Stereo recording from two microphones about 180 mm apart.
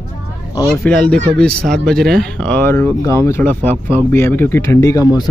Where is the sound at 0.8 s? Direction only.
5° left (ahead or behind).